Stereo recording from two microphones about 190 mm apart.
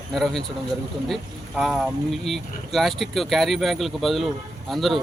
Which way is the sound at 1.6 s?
Centre (ahead or behind).